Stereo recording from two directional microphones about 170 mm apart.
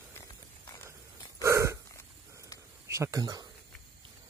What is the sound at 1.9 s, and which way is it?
Hiccup, 15° left (ahead or behind).